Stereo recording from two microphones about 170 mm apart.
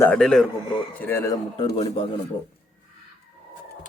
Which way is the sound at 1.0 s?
15° left (ahead or behind).